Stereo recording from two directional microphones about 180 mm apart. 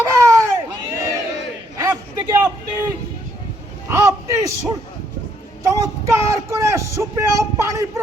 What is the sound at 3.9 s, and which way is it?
A man's voice, 15° right (ahead or behind).